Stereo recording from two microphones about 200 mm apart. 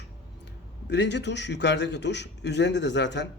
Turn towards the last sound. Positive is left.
turn(degrees=60)  # may be behind; listen again after turning